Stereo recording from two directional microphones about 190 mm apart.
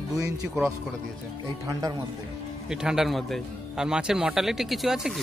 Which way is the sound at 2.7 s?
5° right (ahead or behind).